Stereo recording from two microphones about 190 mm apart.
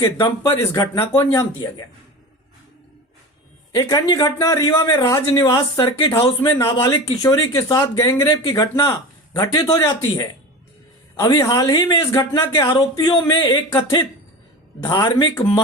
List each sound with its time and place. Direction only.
0.2 s speech: 20° left (ahead or behind)
3.7 s speech: 15° left (ahead or behind)
6.4 s a man's voice: 15° left (ahead or behind)
11.3 s speech: 20° left (ahead or behind)
14.8 s speech: 25° left (ahead or behind)